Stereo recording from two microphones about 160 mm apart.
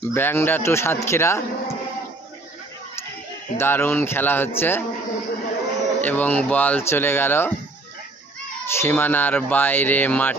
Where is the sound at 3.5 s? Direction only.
15° left (ahead or behind).